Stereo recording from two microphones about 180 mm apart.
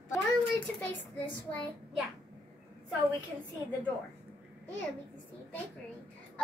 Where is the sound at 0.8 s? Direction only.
10° left (ahead or behind).